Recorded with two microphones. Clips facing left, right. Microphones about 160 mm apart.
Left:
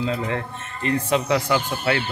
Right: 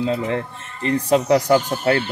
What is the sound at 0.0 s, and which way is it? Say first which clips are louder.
Speech: right 3 dB; 30° right (ahead or behind).